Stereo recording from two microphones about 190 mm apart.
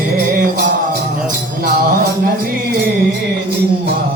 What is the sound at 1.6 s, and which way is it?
Music, 45° right (ahead or behind).